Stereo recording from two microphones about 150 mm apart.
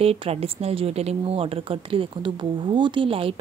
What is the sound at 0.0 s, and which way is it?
Speech, 40° right (ahead or behind).